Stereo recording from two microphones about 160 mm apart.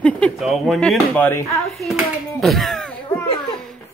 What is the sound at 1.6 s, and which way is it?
Speech, centre (ahead or behind).